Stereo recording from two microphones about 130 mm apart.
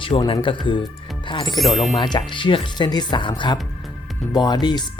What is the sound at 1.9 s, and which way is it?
Speech, 35° left (ahead or behind).